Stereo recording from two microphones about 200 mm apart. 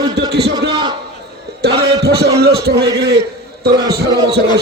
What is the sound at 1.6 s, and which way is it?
A man's voice, 55° right (ahead or behind).